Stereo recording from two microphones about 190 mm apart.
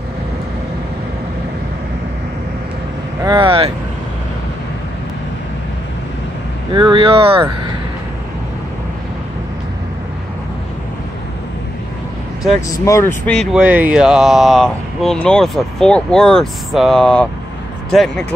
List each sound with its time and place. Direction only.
3.3 s speech: 25° right (ahead or behind)
6.7 s speech: 25° right (ahead or behind)
12.7 s speech: 15° left (ahead or behind)
13.2 s speech: 5° left (ahead or behind)